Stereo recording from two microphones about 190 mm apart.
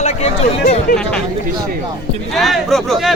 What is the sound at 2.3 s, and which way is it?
Speech, centre (ahead or behind).